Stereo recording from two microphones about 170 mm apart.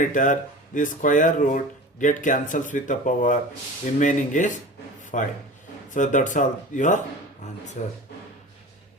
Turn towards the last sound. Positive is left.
turn(degrees=50)  # may be behind; listen again after turning